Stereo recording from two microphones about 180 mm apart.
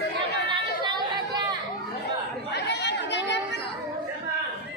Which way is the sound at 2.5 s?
70° left (ahead or behind).